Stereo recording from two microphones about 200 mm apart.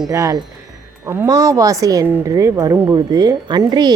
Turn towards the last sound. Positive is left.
turn(degrees=-20)  # may be behind; listen again after turning